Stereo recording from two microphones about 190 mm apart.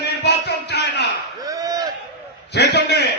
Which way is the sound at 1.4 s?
20° right (ahead or behind).